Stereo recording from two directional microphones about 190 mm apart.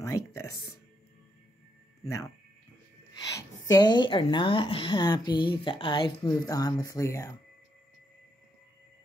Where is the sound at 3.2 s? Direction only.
20° left (ahead or behind).